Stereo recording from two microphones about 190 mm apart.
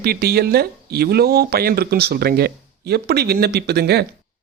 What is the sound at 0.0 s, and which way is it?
Speech, 55° right (ahead or behind).